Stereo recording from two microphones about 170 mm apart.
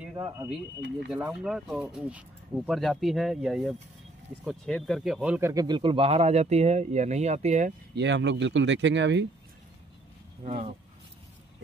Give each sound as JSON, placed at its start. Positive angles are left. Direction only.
{"t": 0.2, "sound": "speech", "side_deg": -10}
{"t": 5.5, "sound": "speech", "side_deg": -25}
{"t": 7.9, "sound": "speech", "side_deg": -90}
{"t": 10.4, "sound": "speech", "side_deg": -35}